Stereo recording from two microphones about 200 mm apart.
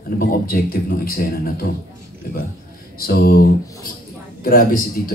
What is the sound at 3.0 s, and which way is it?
Speech, 50° left (ahead or behind).